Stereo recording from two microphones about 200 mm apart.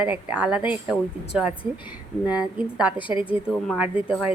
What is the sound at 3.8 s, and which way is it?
Speech, 5° right (ahead or behind).